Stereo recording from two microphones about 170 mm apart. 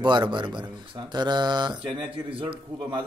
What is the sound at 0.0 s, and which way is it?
Speech, 25° right (ahead or behind).